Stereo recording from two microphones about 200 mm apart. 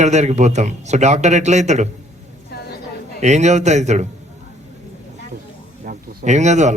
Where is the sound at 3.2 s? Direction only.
35° right (ahead or behind).